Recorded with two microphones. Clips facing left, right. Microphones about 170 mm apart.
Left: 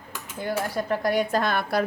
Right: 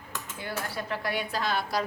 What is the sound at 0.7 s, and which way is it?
A woman's voice, 45° left (ahead or behind).